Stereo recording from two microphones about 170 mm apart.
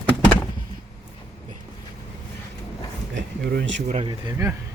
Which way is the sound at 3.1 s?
90° right.